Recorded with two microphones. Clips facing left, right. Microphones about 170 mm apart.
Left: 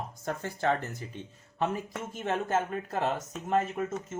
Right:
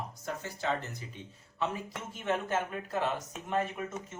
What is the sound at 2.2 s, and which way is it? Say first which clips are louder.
Speech: left 2 dB; 45° left (ahead or behind).